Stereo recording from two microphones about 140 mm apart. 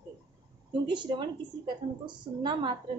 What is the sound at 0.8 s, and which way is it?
Speech, 35° right (ahead or behind).